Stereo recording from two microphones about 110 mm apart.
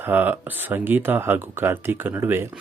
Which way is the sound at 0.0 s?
15° right (ahead or behind).